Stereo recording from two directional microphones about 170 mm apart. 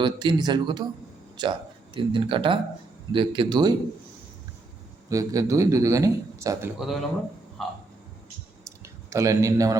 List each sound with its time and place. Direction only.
0.0 s a man's voice: 25° right (ahead or behind)
5.0 s a man's voice: 20° right (ahead or behind)
6.7 s a man's voice: centre (ahead or behind)
8.6 s clicking: 15° right (ahead or behind)